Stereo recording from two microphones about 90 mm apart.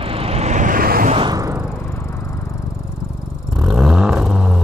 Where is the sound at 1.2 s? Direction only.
40° right (ahead or behind).